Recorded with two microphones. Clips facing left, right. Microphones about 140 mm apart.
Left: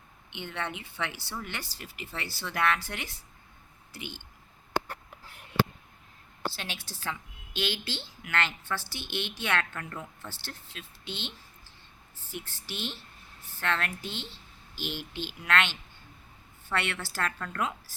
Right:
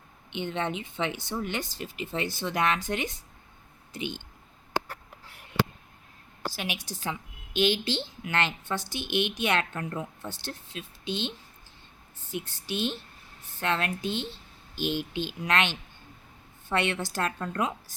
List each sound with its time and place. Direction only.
0.3 s speech: 20° right (ahead or behind)
6.6 s a woman's voice: 15° right (ahead or behind)